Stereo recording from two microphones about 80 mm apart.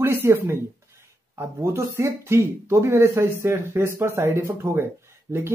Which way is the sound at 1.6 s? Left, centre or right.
Right.